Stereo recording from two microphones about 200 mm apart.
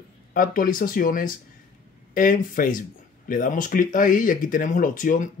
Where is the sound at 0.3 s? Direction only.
45° left (ahead or behind).